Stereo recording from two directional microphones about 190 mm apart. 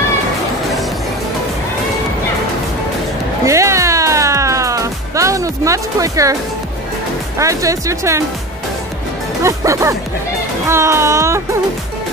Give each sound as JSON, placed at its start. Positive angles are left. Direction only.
{"t": 3.4, "sound": "music", "side_deg": -15}
{"t": 7.3, "sound": "speech", "side_deg": -15}
{"t": 9.4, "sound": "speech", "side_deg": -15}